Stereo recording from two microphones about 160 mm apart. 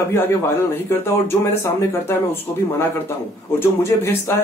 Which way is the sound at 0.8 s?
15° left (ahead or behind).